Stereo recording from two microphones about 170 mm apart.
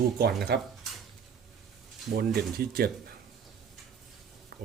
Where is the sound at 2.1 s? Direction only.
60° right (ahead or behind).